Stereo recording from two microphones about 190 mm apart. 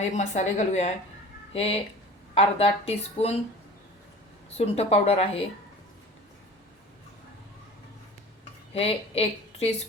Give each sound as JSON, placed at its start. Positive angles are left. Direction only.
{"t": 0.1, "sound": "speech", "side_deg": 35}
{"t": 4.5, "sound": "speech", "side_deg": 35}
{"t": 8.7, "sound": "a woman's voice", "side_deg": 30}